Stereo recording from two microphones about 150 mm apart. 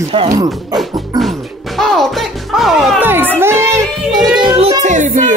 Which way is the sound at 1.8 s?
Centre (ahead or behind).